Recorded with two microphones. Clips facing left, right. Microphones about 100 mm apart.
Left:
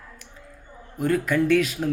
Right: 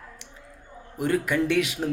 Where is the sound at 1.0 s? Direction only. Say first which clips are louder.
Left 2 dB; 20° right (ahead or behind).